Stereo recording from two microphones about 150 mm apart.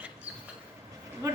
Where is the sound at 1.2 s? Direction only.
20° right (ahead or behind).